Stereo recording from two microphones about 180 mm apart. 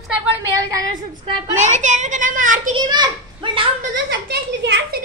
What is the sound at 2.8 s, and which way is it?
Speech, 25° right (ahead or behind).